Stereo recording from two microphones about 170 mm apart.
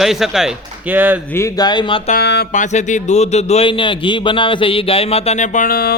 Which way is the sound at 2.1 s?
75° left (ahead or behind).